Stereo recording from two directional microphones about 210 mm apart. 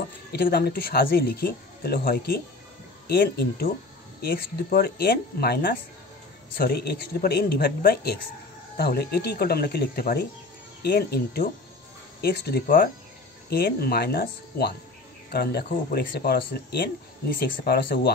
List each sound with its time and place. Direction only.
0.3 s speech: 45° left (ahead or behind)